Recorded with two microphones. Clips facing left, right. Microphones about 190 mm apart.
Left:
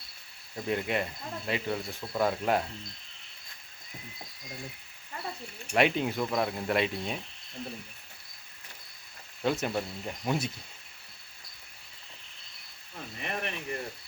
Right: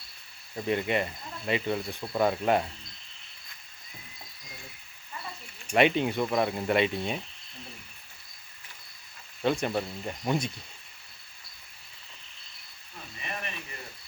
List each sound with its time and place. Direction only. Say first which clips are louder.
0.5 s speech: right 3 dB; centre (ahead or behind)
5.7 s speech: right 3 dB; centre (ahead or behind)
9.4 s speech: right 2 dB; 5° left (ahead or behind)
13.2 s a sound: left 4 dB; 65° left (ahead or behind)